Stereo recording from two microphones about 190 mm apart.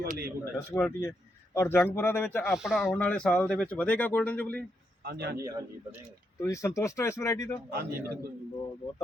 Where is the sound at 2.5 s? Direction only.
Centre (ahead or behind).